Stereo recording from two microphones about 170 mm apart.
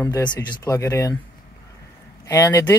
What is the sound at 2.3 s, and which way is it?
Speech, 20° left (ahead or behind).